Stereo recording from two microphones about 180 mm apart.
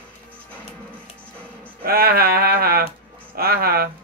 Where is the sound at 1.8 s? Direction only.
55° right (ahead or behind).